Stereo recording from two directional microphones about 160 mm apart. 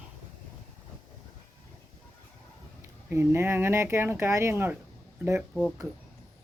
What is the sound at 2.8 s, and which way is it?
Speech, 15° right (ahead or behind).